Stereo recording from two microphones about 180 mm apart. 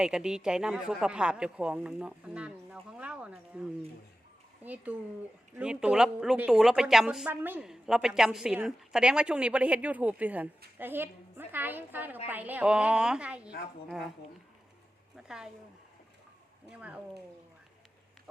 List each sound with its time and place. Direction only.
0.0 s a woman's voice: 5° right (ahead or behind)
13.5 s a woman's voice: 60° left (ahead or behind)
15.1 s a woman's voice: 5° right (ahead or behind)
16.6 s a woman's voice: 5° right (ahead or behind)